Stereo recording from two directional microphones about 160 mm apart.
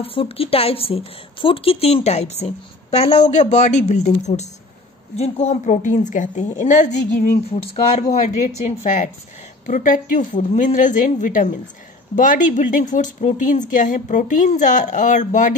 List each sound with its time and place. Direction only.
0.0 s a woman's voice: 35° left (ahead or behind)
8.1 s speech: 50° left (ahead or behind)